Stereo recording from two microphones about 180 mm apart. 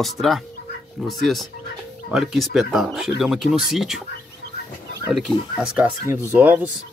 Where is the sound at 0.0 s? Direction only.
Centre (ahead or behind).